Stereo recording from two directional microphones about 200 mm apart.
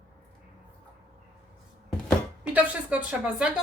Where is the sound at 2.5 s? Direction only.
5° right (ahead or behind).